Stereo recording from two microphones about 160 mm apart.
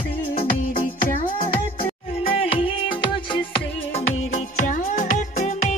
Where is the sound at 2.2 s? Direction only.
35° left (ahead or behind).